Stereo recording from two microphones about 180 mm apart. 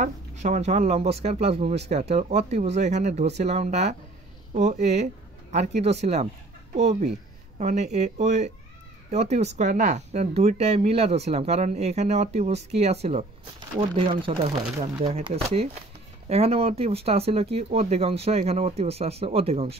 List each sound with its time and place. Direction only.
0.0 s speech: 40° right (ahead or behind)